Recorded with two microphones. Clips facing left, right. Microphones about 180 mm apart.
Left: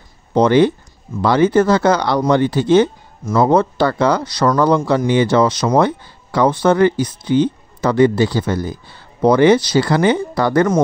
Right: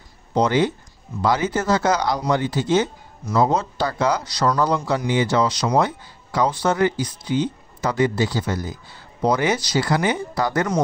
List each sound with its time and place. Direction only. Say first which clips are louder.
0.4 s speech: left 7 dB; 65° left (ahead or behind)